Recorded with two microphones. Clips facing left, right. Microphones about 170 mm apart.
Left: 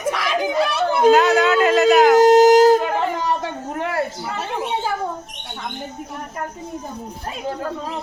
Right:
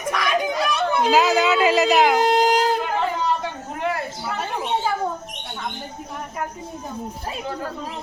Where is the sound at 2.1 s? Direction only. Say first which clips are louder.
Left 8 dB; 45° left (ahead or behind).